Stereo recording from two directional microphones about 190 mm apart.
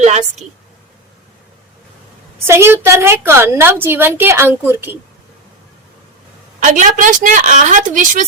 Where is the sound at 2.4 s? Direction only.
15° right (ahead or behind).